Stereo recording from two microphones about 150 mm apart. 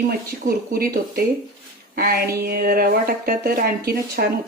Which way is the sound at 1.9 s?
90° right.